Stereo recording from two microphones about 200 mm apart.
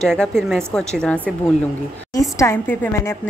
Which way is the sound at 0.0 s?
5° left (ahead or behind).